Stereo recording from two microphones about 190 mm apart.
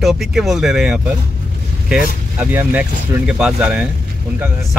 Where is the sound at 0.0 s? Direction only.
Centre (ahead or behind).